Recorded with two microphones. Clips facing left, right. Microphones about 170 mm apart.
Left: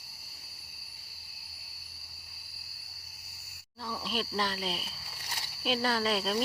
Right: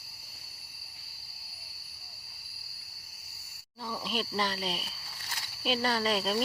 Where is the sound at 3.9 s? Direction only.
Centre (ahead or behind).